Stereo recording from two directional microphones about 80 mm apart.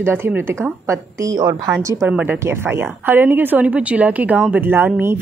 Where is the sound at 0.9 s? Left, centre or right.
Right.